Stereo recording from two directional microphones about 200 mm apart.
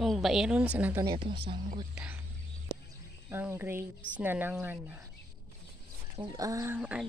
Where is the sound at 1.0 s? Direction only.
25° right (ahead or behind).